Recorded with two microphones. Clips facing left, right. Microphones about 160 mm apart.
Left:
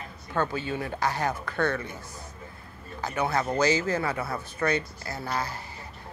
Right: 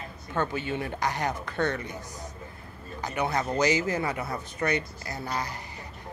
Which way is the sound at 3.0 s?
15° right (ahead or behind).